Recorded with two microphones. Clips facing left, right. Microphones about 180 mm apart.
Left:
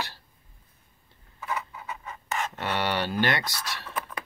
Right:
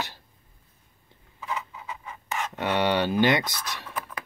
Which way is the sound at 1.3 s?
15° right (ahead or behind).